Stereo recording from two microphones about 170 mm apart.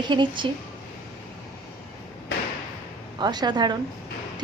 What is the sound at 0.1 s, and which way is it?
Speech, 30° right (ahead or behind).